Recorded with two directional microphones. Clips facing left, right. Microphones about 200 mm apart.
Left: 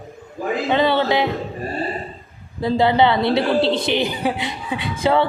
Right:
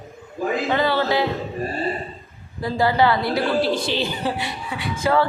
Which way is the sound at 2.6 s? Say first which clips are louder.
Left 3 dB; 20° left (ahead or behind).